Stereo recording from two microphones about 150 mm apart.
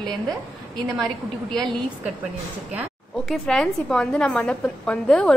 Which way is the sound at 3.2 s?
5° left (ahead or behind).